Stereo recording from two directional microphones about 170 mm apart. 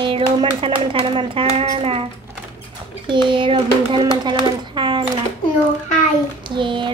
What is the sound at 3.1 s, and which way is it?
Speech, 30° right (ahead or behind).